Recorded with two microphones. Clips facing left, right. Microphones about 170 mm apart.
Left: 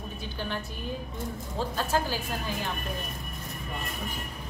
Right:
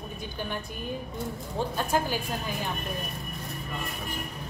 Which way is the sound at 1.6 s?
15° right (ahead or behind).